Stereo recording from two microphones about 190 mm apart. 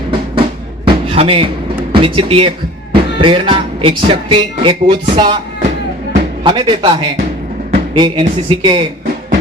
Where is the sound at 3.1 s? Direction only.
25° right (ahead or behind).